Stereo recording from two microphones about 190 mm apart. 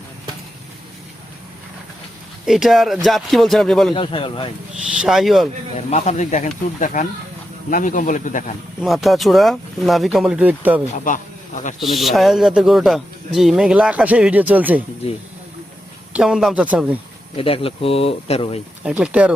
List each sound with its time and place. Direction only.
2.5 s speech: centre (ahead or behind)
3.9 s speech: 25° left (ahead or behind)
4.9 s speech: centre (ahead or behind)
5.7 s speech: 35° left (ahead or behind)
8.8 s speech: centre (ahead or behind)
10.9 s speech: 45° left (ahead or behind)
11.8 s speech: centre (ahead or behind)
16.1 s speech: 5° right (ahead or behind)
17.3 s speech: 30° left (ahead or behind)
18.8 s speech: 5° right (ahead or behind)